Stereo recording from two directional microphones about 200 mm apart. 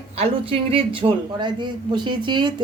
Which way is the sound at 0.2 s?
25° right (ahead or behind).